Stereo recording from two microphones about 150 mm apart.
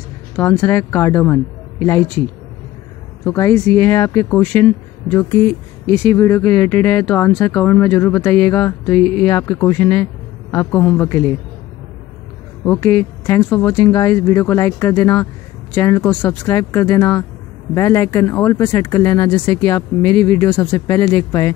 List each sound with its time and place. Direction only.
0.4 s speech: 15° left (ahead or behind)
3.3 s speech: 20° left (ahead or behind)
6.0 s speech: 20° left (ahead or behind)
12.6 s speech: 15° left (ahead or behind)